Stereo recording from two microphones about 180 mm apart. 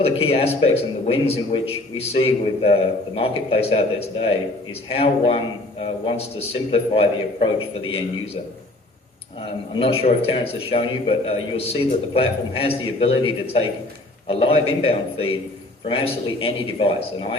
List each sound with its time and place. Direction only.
0.0 s a man's voice: 35° left (ahead or behind)
9.4 s a man's voice: 30° left (ahead or behind)